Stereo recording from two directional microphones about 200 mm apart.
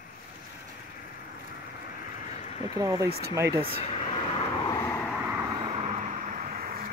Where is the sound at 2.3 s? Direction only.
35° left (ahead or behind).